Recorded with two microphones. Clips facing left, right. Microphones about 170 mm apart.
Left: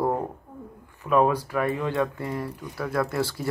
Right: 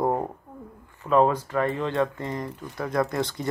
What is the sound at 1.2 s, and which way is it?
Speech, 10° left (ahead or behind).